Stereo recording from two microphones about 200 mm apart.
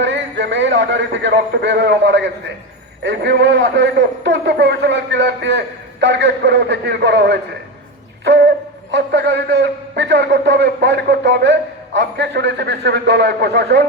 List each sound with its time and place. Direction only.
0.0 s a man's voice: 60° right (ahead or behind)
8.2 s a sound: 60° right (ahead or behind)
8.9 s a man's voice: 60° right (ahead or behind)